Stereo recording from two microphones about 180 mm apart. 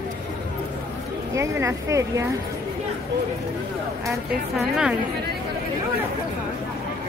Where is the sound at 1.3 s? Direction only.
15° right (ahead or behind).